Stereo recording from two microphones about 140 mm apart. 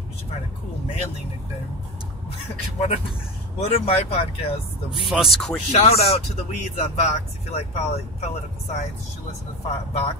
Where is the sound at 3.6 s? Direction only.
50° left (ahead or behind).